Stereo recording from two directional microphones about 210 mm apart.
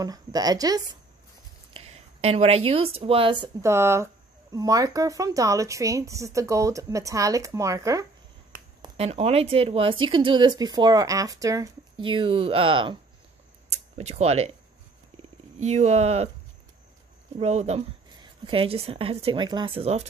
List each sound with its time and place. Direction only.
0.0 s speech: 20° right (ahead or behind)
1.7 s speech: 30° right (ahead or behind)
3.6 s speech: 10° right (ahead or behind)
8.8 s speech: 30° right (ahead or behind)
13.9 s speech: 30° right (ahead or behind)
15.6 s speech: 30° right (ahead or behind)
17.4 s speech: 30° right (ahead or behind)